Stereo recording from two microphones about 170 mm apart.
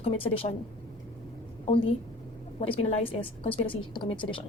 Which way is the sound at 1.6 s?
35° left (ahead or behind).